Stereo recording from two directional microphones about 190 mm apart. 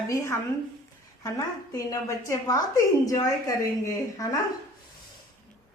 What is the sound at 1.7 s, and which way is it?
A woman's voice, 15° left (ahead or behind).